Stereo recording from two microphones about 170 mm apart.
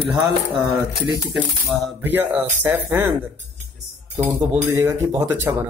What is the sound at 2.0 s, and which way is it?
Speech, 10° right (ahead or behind).